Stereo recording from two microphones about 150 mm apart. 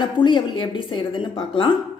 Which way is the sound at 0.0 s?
30° left (ahead or behind).